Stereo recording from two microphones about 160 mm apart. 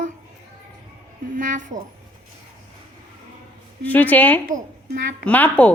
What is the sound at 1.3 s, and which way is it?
Speech, 55° right (ahead or behind).